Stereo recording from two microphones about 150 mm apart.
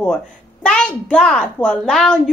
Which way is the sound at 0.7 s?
5° left (ahead or behind).